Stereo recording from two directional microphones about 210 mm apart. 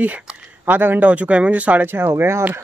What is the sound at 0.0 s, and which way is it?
Speech, 5° right (ahead or behind).